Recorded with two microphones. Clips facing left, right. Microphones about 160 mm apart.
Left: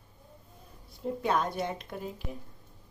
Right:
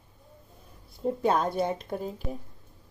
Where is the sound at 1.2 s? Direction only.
30° right (ahead or behind).